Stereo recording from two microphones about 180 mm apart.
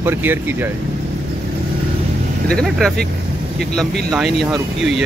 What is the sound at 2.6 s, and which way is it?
Speech, 5° left (ahead or behind).